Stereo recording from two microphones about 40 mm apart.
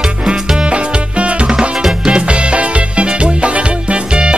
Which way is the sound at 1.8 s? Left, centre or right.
Centre.